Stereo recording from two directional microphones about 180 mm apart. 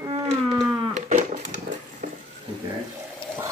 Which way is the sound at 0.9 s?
40° right (ahead or behind).